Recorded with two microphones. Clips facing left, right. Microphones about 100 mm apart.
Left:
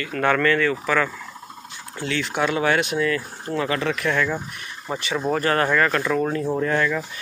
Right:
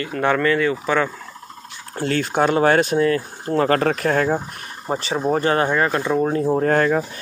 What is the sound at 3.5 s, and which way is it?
Speech, 45° right (ahead or behind).